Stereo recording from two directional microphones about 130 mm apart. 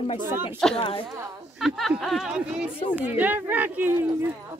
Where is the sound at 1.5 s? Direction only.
Centre (ahead or behind).